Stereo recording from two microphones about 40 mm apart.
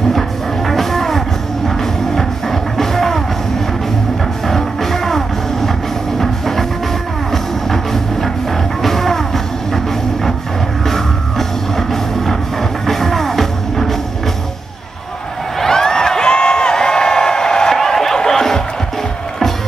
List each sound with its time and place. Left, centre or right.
0.7 s music: centre
10.9 s music: centre
15.6 s a sound: centre